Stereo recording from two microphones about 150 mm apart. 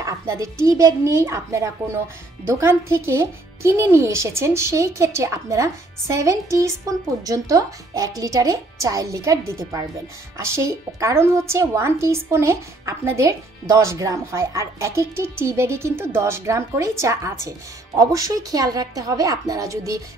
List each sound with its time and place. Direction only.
0.0 s a woman's voice: 20° right (ahead or behind)